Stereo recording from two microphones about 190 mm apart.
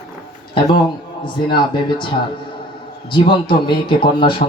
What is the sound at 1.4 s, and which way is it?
Speech, 25° left (ahead or behind).